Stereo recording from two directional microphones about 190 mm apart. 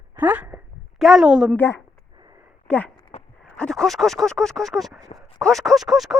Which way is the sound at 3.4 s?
5° left (ahead or behind).